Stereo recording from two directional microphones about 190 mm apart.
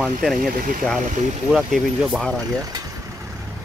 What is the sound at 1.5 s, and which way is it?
Speech, centre (ahead or behind).